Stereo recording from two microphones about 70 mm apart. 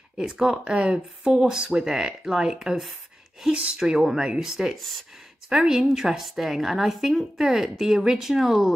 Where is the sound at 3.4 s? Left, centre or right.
Centre.